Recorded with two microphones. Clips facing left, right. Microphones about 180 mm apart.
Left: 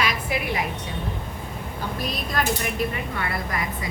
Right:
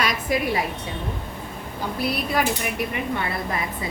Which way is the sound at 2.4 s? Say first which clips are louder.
Right 2 dB; 10° right (ahead or behind).